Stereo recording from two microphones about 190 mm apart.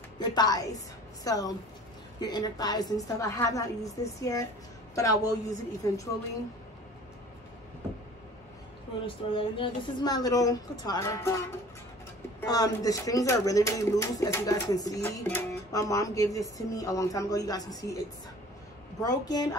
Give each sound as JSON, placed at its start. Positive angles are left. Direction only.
{"t": 0.2, "sound": "speech", "side_deg": 20}
{"t": 9.0, "sound": "speech", "side_deg": 25}
{"t": 12.4, "sound": "speech", "side_deg": 20}
{"t": 18.9, "sound": "speech", "side_deg": 20}